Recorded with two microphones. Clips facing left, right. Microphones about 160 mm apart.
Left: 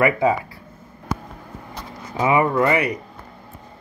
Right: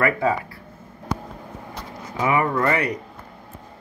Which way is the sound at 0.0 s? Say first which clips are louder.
Left 3 dB; 15° left (ahead or behind).